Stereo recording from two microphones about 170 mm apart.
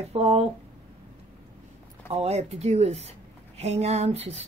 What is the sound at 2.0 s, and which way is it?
A woman's voice, 35° right (ahead or behind).